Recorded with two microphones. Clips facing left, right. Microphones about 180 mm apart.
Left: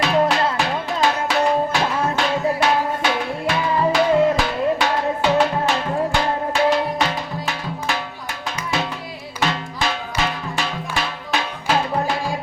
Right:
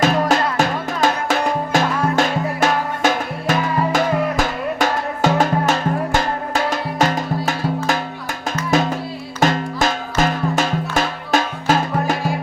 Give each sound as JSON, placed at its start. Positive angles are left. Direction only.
{"t": 0.0, "sound": "music", "side_deg": -45}